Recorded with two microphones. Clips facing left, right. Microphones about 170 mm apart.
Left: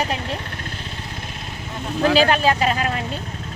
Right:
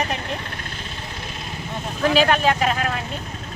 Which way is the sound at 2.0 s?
30° left (ahead or behind).